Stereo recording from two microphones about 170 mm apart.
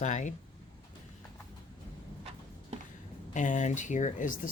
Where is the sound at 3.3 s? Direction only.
45° left (ahead or behind).